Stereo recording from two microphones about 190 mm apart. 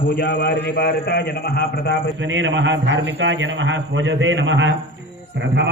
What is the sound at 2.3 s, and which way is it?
A man's voice, 80° right.